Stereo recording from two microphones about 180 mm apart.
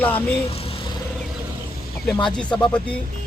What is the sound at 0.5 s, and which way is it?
Vehicle, 30° left (ahead or behind).